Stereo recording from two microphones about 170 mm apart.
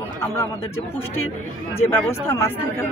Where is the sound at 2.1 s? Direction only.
15° left (ahead or behind).